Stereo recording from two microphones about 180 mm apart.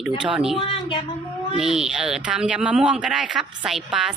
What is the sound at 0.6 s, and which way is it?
Speech, 25° left (ahead or behind).